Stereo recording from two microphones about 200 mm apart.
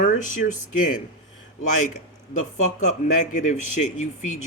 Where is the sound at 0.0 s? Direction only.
40° left (ahead or behind).